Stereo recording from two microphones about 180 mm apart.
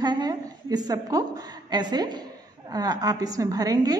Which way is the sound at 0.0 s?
20° right (ahead or behind).